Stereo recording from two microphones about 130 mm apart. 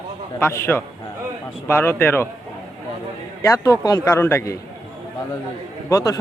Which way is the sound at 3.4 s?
25° left (ahead or behind).